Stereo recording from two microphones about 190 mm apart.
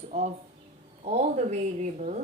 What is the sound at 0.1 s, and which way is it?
A woman's voice, 35° right (ahead or behind).